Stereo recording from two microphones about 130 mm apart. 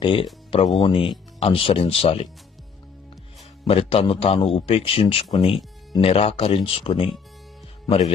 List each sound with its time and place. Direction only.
0.0 s speech: 40° left (ahead or behind)
3.7 s speech: 50° left (ahead or behind)